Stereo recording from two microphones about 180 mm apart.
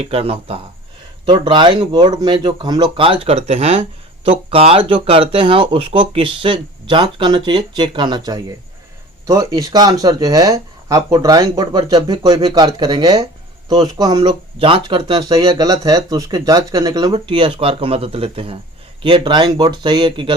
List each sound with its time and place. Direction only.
0.0 s speech: 35° right (ahead or behind)